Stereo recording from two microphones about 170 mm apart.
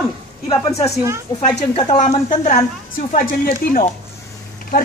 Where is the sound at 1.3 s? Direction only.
20° left (ahead or behind).